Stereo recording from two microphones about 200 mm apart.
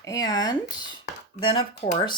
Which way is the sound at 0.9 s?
25° left (ahead or behind).